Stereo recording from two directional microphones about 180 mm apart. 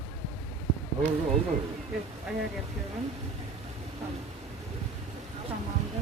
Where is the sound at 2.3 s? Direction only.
5° right (ahead or behind).